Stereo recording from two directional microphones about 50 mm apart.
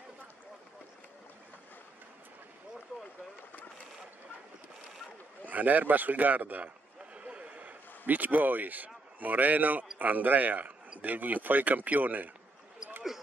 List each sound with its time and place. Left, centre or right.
5.5 s a man's voice: right
7.2 s a sound: right
8.1 s a man's voice: right